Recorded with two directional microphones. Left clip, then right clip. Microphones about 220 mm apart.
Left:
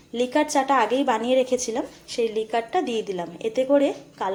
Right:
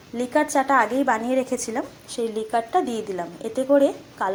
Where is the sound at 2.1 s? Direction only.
25° right (ahead or behind).